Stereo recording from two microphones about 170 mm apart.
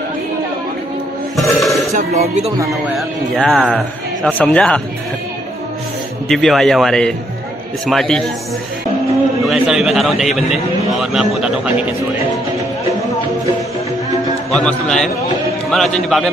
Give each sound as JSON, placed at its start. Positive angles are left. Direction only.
{"t": 1.3, "sound": "a sound", "side_deg": 0}
{"t": 2.0, "sound": "speech", "side_deg": -40}
{"t": 2.9, "sound": "speech", "side_deg": 0}
{"t": 6.2, "sound": "speech", "side_deg": 0}
{"t": 9.5, "sound": "speech", "side_deg": 0}
{"t": 14.5, "sound": "speech", "side_deg": 5}